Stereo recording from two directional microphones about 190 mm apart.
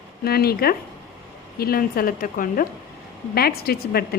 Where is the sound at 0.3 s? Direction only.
55° left (ahead or behind).